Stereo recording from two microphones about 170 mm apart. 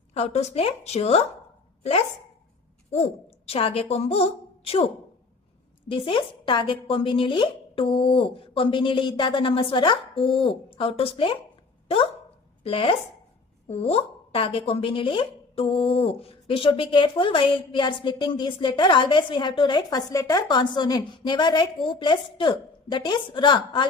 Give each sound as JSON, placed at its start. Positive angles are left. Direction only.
{"t": 0.1, "sound": "a woman's voice", "side_deg": 35}
{"t": 5.9, "sound": "a woman's voice", "side_deg": 30}
{"t": 12.6, "sound": "a woman's voice", "side_deg": 30}